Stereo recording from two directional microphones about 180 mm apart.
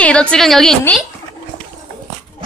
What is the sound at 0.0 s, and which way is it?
A woman's voice, 5° left (ahead or behind).